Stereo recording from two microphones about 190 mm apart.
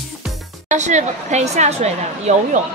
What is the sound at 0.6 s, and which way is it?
Speech, 40° right (ahead or behind).